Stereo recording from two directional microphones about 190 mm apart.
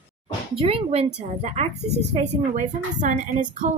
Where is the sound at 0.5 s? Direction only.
30° right (ahead or behind).